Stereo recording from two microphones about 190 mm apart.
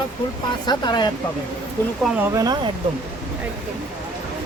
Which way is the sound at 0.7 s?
20° left (ahead or behind).